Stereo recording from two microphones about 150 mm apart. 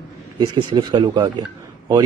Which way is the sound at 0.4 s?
30° right (ahead or behind).